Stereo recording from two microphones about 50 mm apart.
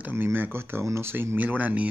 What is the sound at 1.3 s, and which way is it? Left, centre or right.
Speech, right.